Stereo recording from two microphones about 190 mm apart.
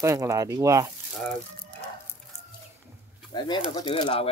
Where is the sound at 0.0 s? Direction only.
15° right (ahead or behind).